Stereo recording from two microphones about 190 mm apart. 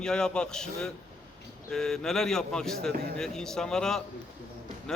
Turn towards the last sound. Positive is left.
turn(degrees=5)  # may be behind; listen again after turning